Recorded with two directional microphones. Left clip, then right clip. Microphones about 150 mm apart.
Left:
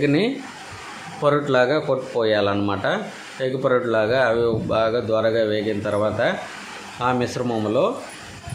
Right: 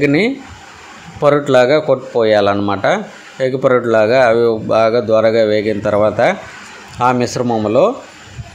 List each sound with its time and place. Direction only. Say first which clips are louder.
0.0 s speech: right 6 dB; 40° right (ahead or behind)